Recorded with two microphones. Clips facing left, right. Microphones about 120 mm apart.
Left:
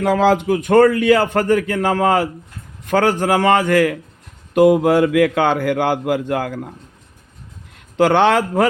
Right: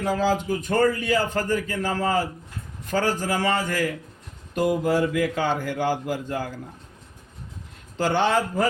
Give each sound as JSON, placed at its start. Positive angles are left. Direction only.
{"t": 0.0, "sound": "speech", "side_deg": 70}
{"t": 7.9, "sound": "speech", "side_deg": 75}